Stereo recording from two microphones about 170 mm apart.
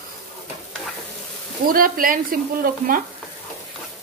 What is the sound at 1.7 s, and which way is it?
A woman's voice, 55° right (ahead or behind).